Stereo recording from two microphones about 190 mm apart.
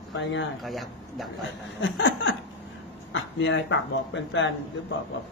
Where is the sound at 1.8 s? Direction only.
75° left (ahead or behind).